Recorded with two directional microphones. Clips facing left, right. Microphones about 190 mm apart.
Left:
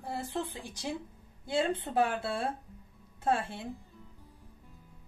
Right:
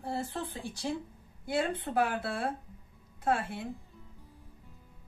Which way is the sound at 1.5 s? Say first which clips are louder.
Left 1 dB; 25° left (ahead or behind).